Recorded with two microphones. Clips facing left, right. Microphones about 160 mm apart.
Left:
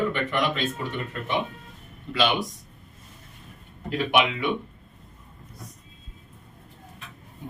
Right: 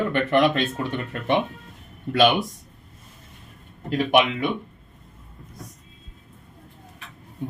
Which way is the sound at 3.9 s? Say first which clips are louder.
Right 3 dB; 40° right (ahead or behind).